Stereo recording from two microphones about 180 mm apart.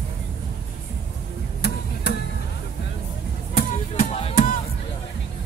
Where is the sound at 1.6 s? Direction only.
65° left (ahead or behind).